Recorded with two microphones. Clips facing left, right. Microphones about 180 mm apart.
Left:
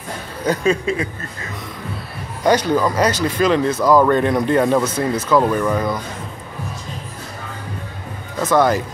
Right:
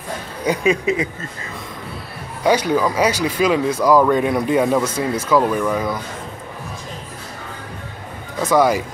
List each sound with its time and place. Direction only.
0.5 s speech: 15° right (ahead or behind)
2.4 s speech: 5° right (ahead or behind)
8.4 s speech: 10° right (ahead or behind)